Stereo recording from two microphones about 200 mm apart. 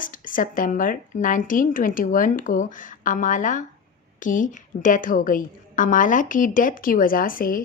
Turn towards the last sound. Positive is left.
turn(degrees=45)  # may be behind; listen again after turning